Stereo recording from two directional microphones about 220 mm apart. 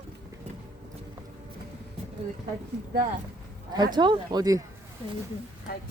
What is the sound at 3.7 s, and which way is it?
Speech, 20° right (ahead or behind).